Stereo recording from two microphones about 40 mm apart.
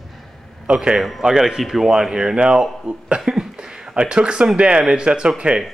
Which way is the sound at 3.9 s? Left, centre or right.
Right.